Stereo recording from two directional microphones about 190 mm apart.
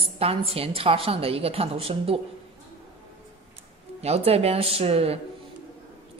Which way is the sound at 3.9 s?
35° right (ahead or behind).